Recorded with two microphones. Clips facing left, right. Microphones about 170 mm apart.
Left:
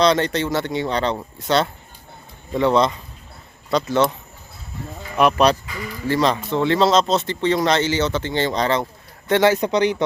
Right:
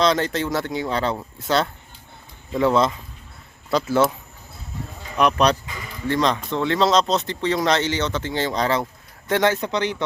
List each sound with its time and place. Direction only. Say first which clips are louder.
0.0 s speech: left 2 dB; centre (ahead or behind)
5.1 s speech: left 2 dB; 5° left (ahead or behind)
9.6 s speech: left 5 dB; 15° left (ahead or behind)